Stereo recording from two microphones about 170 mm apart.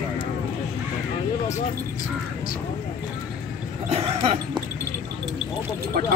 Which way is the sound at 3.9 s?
35° right (ahead or behind).